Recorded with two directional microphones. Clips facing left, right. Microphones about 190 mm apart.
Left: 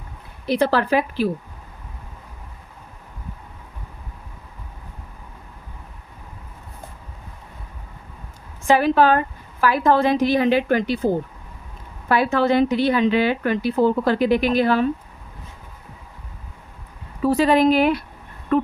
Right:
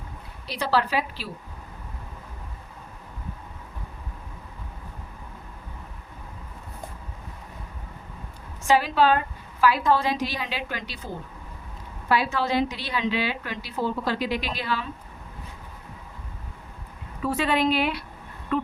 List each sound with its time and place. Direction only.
0.4 s speech: 50° left (ahead or behind)
8.6 s speech: 55° left (ahead or behind)
17.2 s speech: 40° left (ahead or behind)